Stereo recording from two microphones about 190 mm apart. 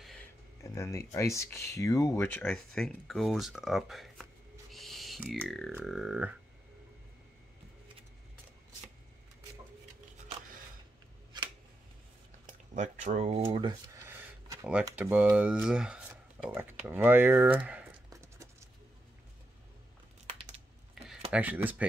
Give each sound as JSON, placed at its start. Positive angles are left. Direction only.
{"t": 0.7, "sound": "speech", "side_deg": 15}
{"t": 2.4, "sound": "speech", "side_deg": 5}
{"t": 4.7, "sound": "owl", "side_deg": 0}
{"t": 5.9, "sound": "speech", "side_deg": 0}
{"t": 12.7, "sound": "speech", "side_deg": -40}
{"t": 18.1, "sound": "a sound", "side_deg": -15}
{"t": 20.2, "sound": "computer keyboard", "side_deg": -35}
{"t": 21.3, "sound": "speech", "side_deg": -10}